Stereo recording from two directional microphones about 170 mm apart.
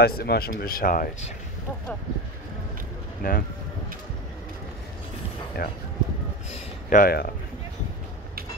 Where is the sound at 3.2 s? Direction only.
55° left (ahead or behind).